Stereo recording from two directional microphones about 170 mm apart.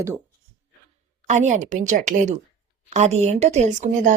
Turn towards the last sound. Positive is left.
turn(degrees=-45)  # may be behind; listen again after turning